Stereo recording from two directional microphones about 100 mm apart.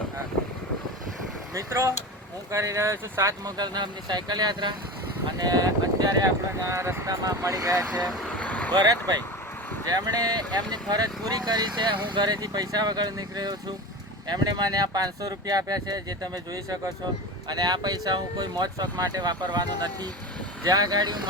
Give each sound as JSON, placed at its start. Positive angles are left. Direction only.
{"t": 1.5, "sound": "speech", "side_deg": -30}
{"t": 8.4, "sound": "vehicle", "side_deg": 15}
{"t": 8.7, "sound": "speech", "side_deg": -45}